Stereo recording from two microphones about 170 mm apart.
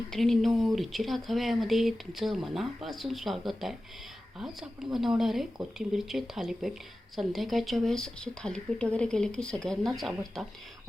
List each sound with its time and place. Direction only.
0.1 s speech: centre (ahead or behind)